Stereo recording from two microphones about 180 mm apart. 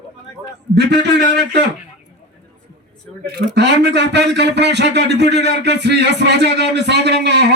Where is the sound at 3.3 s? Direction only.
70° right (ahead or behind).